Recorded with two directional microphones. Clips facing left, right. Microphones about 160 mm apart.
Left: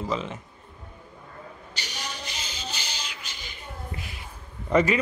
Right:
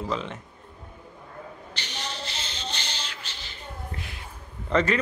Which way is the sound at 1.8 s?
10° left (ahead or behind).